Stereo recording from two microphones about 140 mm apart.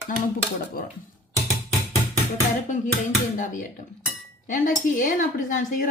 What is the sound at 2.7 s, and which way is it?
A woman's voice, 65° left (ahead or behind).